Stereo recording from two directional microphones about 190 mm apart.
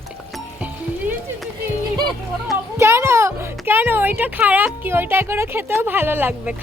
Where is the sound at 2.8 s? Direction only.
15° right (ahead or behind).